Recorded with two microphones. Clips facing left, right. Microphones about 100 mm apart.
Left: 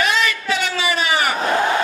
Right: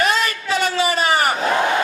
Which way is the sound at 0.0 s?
40° right (ahead or behind).